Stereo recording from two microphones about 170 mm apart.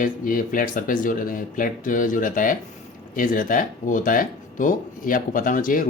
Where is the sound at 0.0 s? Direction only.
55° left (ahead or behind).